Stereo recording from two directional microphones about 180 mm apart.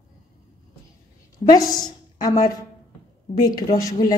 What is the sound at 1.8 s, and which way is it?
A woman's voice, 20° left (ahead or behind).